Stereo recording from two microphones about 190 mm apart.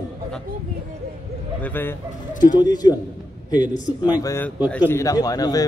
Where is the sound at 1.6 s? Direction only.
10° left (ahead or behind).